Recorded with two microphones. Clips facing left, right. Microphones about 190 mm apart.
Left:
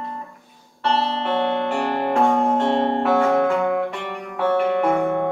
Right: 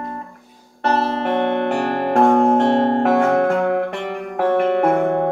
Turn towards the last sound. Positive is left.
turn(degrees=-55)  # may be behind; listen again after turning